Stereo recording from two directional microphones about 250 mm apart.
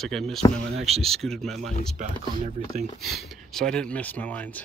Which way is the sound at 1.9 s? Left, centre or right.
Right.